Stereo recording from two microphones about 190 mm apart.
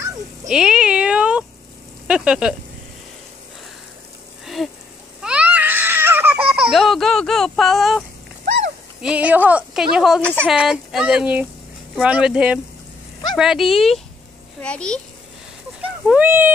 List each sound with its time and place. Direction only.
0.5 s a sound: 5° right (ahead or behind)
2.0 s speech: 5° right (ahead or behind)
5.2 s baby cry: 5° right (ahead or behind)
9.0 s speech: 5° right (ahead or behind)
15.8 s speech: 10° right (ahead or behind)